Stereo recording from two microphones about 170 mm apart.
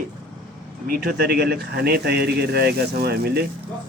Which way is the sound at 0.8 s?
60° right (ahead or behind).